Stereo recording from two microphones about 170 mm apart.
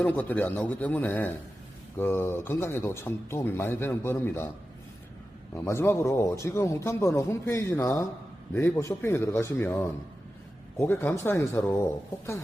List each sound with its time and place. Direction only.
0.0 s speech: 10° left (ahead or behind)
5.5 s speech: 15° left (ahead or behind)